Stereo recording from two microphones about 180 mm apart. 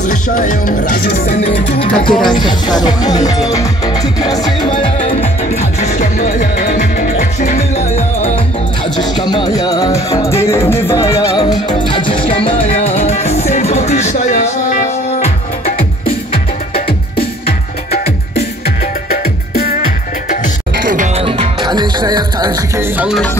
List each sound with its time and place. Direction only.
0.4 s music: 50° left (ahead or behind)
1.7 s speech: 30° left (ahead or behind)
2.2 s music: 25° left (ahead or behind)
8.9 s music: 25° left (ahead or behind); by 15.3 s 40° left (ahead or behind)
16.7 s music: 30° left (ahead or behind)
19.0 s music: 55° left (ahead or behind)
20.8 s music: 45° right (ahead or behind)
21.2 s music: 30° right (ahead or behind)
22.9 s music: 5° right (ahead or behind)